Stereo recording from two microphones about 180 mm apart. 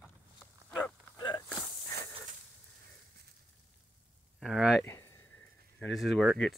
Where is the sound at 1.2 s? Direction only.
25° left (ahead or behind).